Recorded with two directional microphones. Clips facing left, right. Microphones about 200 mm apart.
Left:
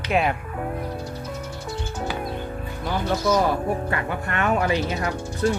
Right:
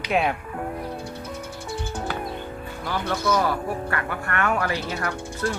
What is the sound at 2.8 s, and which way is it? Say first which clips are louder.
Speech: left 2 dB; 20° left (ahead or behind).